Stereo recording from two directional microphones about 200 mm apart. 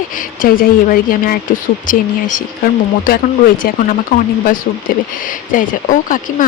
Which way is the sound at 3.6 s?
45° left (ahead or behind).